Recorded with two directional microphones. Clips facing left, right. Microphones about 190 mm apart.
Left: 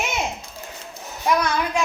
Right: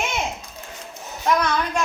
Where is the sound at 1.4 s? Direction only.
10° left (ahead or behind).